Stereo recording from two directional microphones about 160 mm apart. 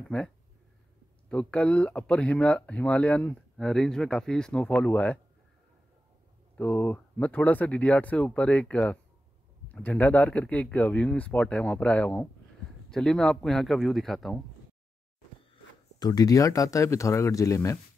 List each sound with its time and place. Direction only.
1.3 s speech: 5° left (ahead or behind)
6.5 s a man's voice: 10° left (ahead or behind)
16.0 s speech: 25° left (ahead or behind)